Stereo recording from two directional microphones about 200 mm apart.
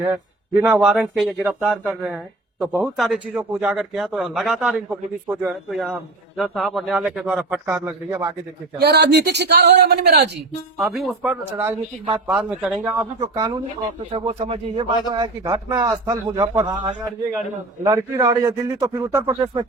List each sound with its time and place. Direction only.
0.6 s a man's voice: 5° right (ahead or behind)
8.8 s a man's voice: 55° right (ahead or behind)
10.8 s a man's voice: centre (ahead or behind)
11.5 s a man's voice: 10° right (ahead or behind)
13.1 s a man's voice: 20° right (ahead or behind)